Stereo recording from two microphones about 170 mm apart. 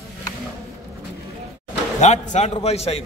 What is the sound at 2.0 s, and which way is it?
A man's voice, 40° left (ahead or behind).